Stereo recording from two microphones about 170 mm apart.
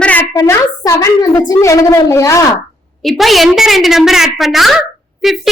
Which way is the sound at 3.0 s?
Centre (ahead or behind).